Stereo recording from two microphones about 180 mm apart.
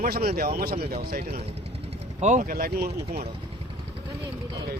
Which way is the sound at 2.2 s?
40° right (ahead or behind).